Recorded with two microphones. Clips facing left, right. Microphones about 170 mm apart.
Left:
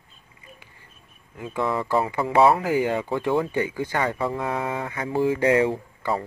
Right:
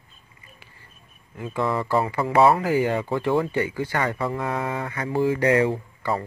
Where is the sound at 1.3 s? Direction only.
15° left (ahead or behind).